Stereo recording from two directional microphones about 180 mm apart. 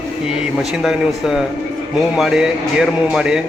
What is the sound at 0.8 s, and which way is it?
A man's voice, centre (ahead or behind).